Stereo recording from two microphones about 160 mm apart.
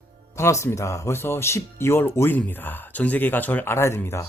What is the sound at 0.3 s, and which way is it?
Speech, 15° left (ahead or behind).